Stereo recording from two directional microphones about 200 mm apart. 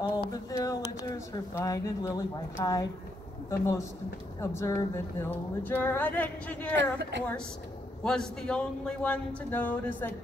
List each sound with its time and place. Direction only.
0.2 s speech: 15° left (ahead or behind)
6.8 s a woman's voice: 60° right (ahead or behind)
8.0 s a man's voice: 5° left (ahead or behind)